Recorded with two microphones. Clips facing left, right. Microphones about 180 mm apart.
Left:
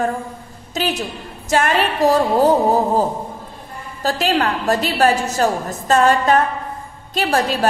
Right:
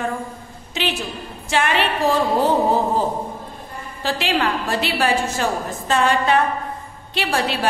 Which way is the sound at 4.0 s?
40° left (ahead or behind).